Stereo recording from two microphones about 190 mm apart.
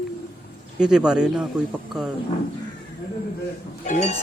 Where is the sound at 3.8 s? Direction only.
40° left (ahead or behind).